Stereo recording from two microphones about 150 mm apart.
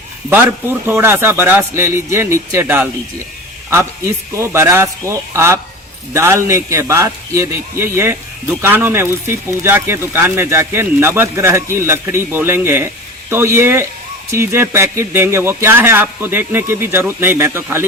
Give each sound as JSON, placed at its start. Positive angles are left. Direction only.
{"t": 0.3, "sound": "a man's voice", "side_deg": -15}
{"t": 4.4, "sound": "a man's voice", "side_deg": -15}